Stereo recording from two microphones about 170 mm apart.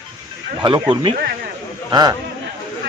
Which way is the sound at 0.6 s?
25° right (ahead or behind).